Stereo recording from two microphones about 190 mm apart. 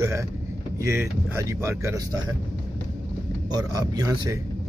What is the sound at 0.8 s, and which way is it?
Speech, 15° right (ahead or behind).